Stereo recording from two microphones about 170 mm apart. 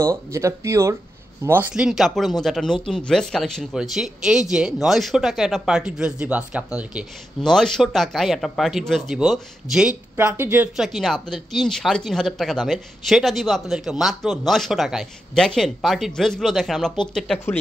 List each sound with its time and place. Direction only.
0.0 s speech: 15° right (ahead or behind)
10.8 s speech: centre (ahead or behind)